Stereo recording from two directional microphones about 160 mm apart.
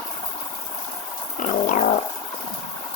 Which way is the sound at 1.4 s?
50° left (ahead or behind).